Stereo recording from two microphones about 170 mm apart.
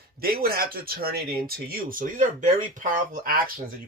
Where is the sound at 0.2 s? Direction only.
65° right (ahead or behind).